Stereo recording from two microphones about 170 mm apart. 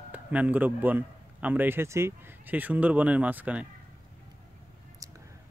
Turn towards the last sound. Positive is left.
turn(degrees=-20)  # may be behind; listen again after turning